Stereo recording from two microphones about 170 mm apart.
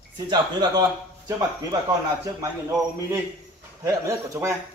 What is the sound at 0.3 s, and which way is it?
A man's voice, 25° right (ahead or behind).